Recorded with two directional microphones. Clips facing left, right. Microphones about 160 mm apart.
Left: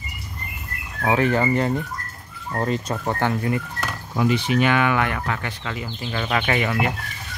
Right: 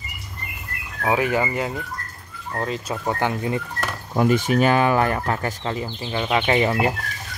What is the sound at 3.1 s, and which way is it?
Speech, 15° right (ahead or behind).